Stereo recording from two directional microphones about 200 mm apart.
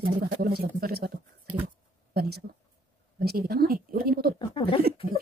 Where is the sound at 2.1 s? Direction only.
55° right (ahead or behind).